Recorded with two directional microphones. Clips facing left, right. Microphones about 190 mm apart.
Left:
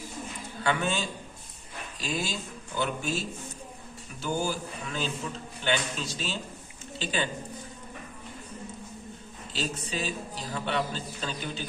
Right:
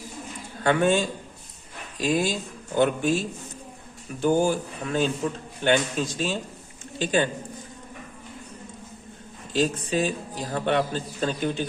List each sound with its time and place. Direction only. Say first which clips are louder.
0.6 s a man's voice: right 8 dB; 50° right (ahead or behind)
4.2 s a man's voice: right 9 dB; 50° right (ahead or behind)
9.5 s a man's voice: right 9 dB; 50° right (ahead or behind)